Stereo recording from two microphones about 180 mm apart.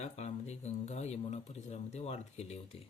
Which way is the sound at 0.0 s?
40° left (ahead or behind).